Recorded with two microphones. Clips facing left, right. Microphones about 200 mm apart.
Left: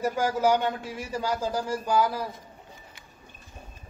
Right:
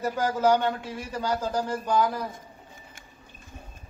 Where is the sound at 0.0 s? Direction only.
10° left (ahead or behind).